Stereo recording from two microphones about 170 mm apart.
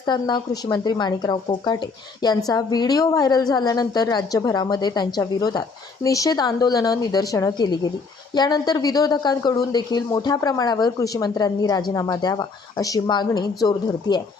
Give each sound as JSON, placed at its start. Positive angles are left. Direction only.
{"t": 0.0, "sound": "a woman's voice", "side_deg": 25}